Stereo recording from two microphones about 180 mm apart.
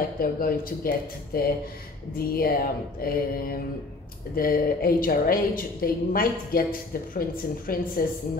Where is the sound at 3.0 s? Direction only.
55° left (ahead or behind).